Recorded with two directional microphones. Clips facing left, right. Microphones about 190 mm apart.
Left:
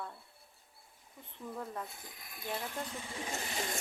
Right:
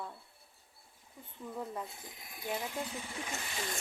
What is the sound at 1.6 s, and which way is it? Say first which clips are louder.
A woman's voice: right 3 dB; 15° right (ahead or behind).